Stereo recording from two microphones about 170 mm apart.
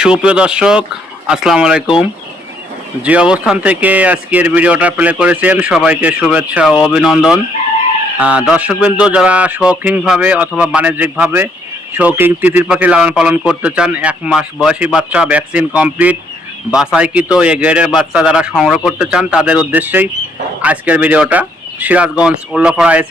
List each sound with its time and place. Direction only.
0.0 s a man's voice: 5° right (ahead or behind)